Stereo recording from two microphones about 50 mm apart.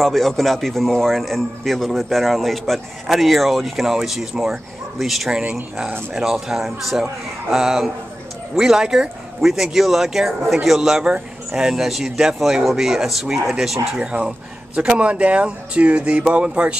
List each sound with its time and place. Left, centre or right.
0.0 s a man's voice: centre
5.4 s a man's voice: centre
13.9 s speech: centre